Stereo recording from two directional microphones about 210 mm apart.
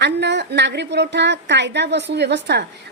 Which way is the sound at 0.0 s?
55° right (ahead or behind).